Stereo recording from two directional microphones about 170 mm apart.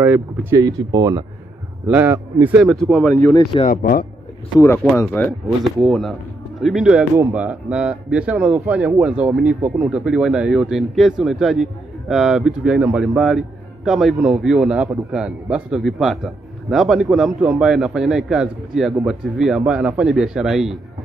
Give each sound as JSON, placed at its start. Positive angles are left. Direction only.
{"t": 0.0, "sound": "speech", "side_deg": -10}
{"t": 0.6, "sound": "speech", "side_deg": -20}
{"t": 1.9, "sound": "speech", "side_deg": -10}
{"t": 3.7, "sound": "speech", "side_deg": 65}
{"t": 4.6, "sound": "speech", "side_deg": 15}
{"t": 5.8, "sound": "speech", "side_deg": 0}